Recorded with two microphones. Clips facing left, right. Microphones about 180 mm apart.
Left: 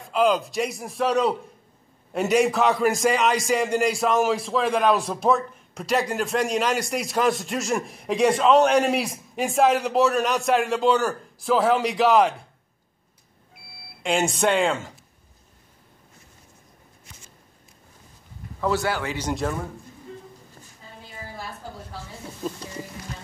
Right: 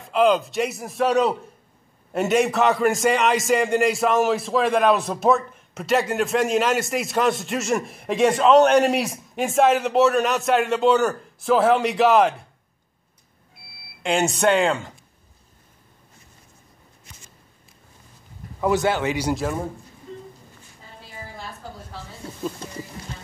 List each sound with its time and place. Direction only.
0.0 s a man's voice: centre (ahead or behind)
14.0 s a man's voice: centre (ahead or behind)
18.6 s a man's voice: 20° right (ahead or behind)
19.1 s a man's voice: 10° right (ahead or behind)